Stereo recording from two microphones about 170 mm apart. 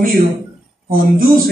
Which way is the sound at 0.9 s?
55° right (ahead or behind).